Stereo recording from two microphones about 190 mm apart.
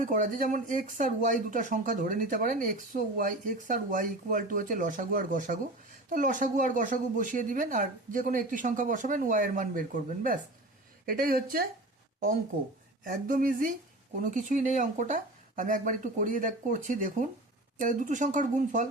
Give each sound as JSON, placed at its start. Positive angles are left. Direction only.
{"t": 0.0, "sound": "speech", "side_deg": -45}
{"t": 13.1, "sound": "speech", "side_deg": -45}